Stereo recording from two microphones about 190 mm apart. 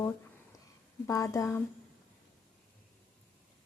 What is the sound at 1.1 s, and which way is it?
Speech, 20° left (ahead or behind).